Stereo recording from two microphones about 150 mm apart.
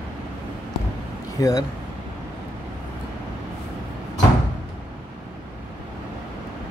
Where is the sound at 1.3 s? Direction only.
20° left (ahead or behind).